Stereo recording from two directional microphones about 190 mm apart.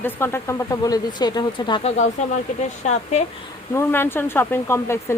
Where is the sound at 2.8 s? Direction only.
35° left (ahead or behind).